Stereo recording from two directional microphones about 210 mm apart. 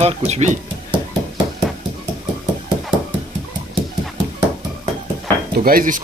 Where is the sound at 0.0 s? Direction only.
30° right (ahead or behind).